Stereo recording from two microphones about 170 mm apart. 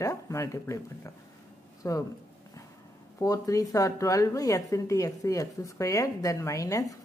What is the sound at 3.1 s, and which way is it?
A woman's voice, 20° left (ahead or behind).